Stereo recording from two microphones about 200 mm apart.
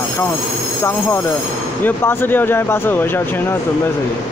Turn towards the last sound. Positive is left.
turn(degrees=10)  # may be behind; listen again after turning